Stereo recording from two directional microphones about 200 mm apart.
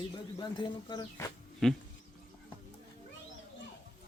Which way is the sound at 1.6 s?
Centre (ahead or behind).